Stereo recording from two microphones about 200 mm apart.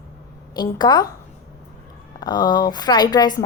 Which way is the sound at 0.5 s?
20° left (ahead or behind).